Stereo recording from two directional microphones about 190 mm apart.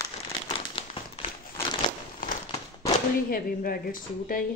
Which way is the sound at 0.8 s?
30° left (ahead or behind).